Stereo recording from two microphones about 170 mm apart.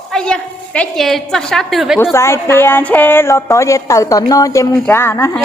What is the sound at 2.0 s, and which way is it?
A woman's voice, 15° left (ahead or behind).